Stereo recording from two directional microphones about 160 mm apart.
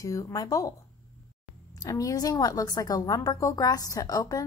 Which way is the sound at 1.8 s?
20° left (ahead or behind).